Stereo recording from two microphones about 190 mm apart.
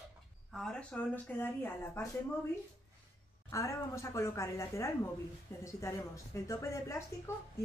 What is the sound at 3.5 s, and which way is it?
A woman's voice, 15° left (ahead or behind).